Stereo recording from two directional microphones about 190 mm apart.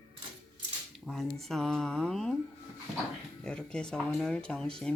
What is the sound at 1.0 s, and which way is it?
Speech, centre (ahead or behind).